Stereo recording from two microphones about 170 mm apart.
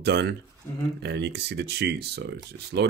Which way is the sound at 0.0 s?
80° right.